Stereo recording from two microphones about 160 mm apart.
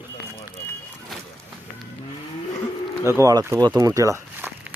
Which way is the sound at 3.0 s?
20° right (ahead or behind).